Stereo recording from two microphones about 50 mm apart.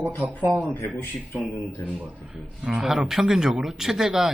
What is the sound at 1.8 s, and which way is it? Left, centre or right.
A man's voice, right.